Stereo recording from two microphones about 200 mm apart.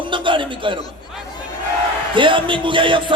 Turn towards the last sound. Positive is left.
turn(degrees=-25)  # may be behind; listen again after turning